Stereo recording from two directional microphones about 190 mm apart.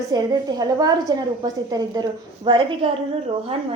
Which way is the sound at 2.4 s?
25° right (ahead or behind).